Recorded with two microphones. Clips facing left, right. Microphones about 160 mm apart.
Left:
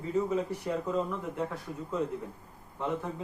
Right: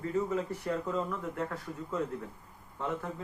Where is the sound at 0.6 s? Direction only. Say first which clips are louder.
Left 2 dB; 20° left (ahead or behind).